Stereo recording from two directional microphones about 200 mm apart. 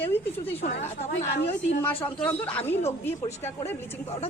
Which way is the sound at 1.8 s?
10° left (ahead or behind).